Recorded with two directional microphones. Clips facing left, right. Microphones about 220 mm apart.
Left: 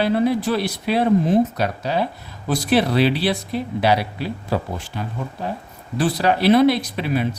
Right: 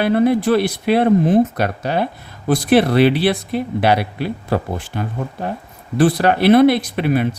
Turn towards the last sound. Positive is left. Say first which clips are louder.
# right 4 dB
turn(degrees=-55)  # may be behind; listen again after turning